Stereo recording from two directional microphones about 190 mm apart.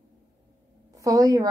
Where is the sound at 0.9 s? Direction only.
20° right (ahead or behind).